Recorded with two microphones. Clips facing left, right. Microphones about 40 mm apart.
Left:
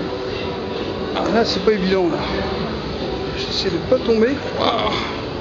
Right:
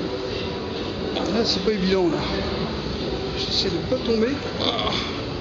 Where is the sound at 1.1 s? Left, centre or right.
Left.